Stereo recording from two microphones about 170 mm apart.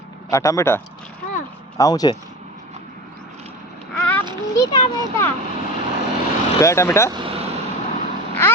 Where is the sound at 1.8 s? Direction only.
20° left (ahead or behind).